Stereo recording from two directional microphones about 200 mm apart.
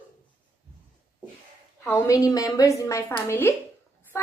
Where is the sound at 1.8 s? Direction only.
15° left (ahead or behind).